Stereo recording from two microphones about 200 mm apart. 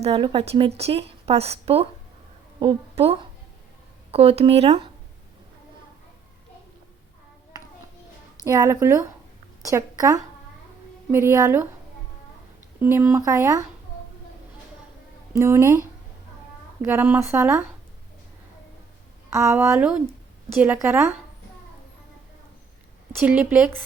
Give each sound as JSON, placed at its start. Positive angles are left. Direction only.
{"t": 0.0, "sound": "a woman's voice", "side_deg": -30}
{"t": 8.4, "sound": "speech", "side_deg": -15}
{"t": 12.8, "sound": "speech", "side_deg": -10}
{"t": 15.4, "sound": "speech", "side_deg": -15}
{"t": 16.8, "sound": "speech", "side_deg": -10}
{"t": 19.3, "sound": "speech", "side_deg": -15}
{"t": 23.2, "sound": "speech", "side_deg": -5}